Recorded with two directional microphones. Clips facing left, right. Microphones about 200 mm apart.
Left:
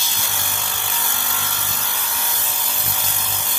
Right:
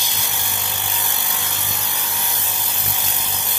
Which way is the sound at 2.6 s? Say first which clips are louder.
Even; 15° right (ahead or behind).